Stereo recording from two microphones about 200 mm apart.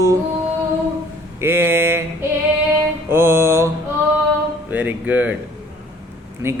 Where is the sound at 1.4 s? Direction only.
10° right (ahead or behind).